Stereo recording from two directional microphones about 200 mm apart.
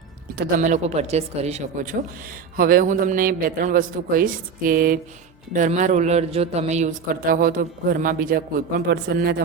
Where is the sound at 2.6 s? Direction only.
45° right (ahead or behind).